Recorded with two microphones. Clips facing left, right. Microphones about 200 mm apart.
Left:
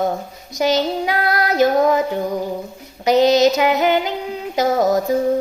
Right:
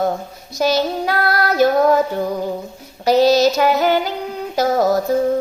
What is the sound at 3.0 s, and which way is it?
Female singing, 20° left (ahead or behind).